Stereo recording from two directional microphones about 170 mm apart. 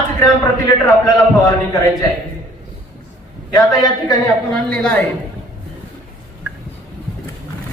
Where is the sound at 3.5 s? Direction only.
20° left (ahead or behind).